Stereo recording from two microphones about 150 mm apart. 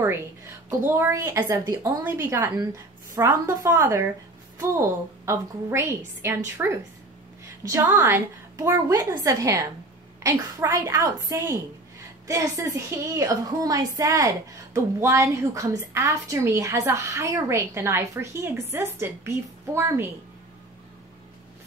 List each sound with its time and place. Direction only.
0.0 s a sound: 15° right (ahead or behind)
0.8 s a woman's voice: 15° right (ahead or behind)
5.2 s a woman's voice: 20° right (ahead or behind)